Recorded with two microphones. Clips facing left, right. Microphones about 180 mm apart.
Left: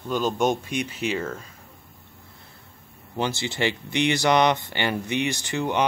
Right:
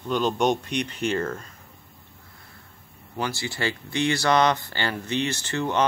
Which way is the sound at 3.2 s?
20° left (ahead or behind).